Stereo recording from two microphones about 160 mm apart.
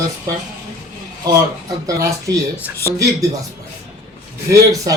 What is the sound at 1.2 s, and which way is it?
Speech, 25° right (ahead or behind).